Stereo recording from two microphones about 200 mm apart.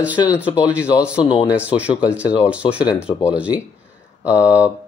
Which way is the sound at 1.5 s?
5° right (ahead or behind).